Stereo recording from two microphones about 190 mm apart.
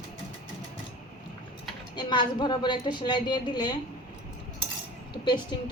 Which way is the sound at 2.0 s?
25° left (ahead or behind).